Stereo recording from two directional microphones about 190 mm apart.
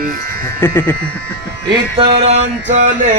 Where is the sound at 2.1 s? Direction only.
60° right (ahead or behind).